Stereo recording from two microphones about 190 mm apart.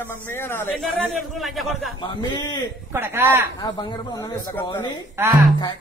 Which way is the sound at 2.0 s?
25° left (ahead or behind).